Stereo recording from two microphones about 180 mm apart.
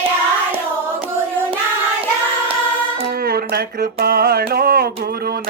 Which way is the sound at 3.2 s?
55° right (ahead or behind).